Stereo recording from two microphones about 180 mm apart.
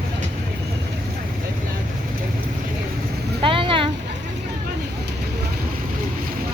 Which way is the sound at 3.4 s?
30° right (ahead or behind).